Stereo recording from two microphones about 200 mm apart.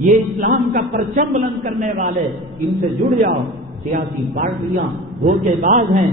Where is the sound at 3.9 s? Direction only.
40° right (ahead or behind).